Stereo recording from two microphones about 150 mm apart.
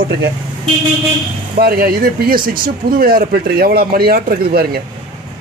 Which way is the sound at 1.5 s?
85° right.